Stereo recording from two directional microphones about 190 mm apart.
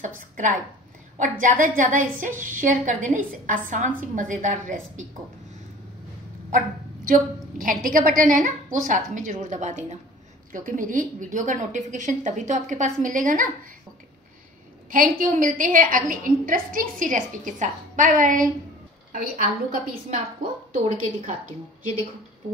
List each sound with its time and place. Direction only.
0.2 s a woman's voice: 45° right (ahead or behind)
7.1 s a woman's voice: 45° right (ahead or behind)
14.9 s a woman's voice: 45° right (ahead or behind)